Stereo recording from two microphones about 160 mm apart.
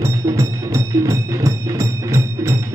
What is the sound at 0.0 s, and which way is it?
Music, 20° right (ahead or behind).